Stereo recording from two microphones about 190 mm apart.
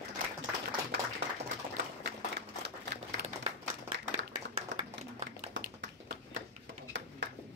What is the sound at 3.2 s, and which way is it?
Clapping, 60° right (ahead or behind).